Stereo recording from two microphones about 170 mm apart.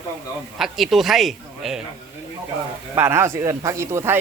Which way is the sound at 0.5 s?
Centre (ahead or behind).